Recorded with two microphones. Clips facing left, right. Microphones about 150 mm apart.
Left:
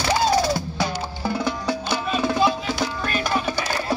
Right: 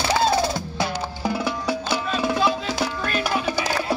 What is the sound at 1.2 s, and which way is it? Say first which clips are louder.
Music: even; 10° right (ahead or behind).